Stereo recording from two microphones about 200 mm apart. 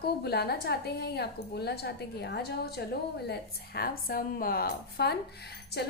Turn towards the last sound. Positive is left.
turn(degrees=55)  # may be behind; listen again after turning